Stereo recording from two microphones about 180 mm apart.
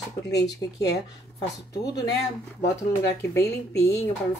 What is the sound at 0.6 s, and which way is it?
Speech, 20° left (ahead or behind).